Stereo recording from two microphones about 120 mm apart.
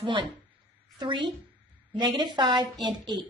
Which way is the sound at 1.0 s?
40° right (ahead or behind).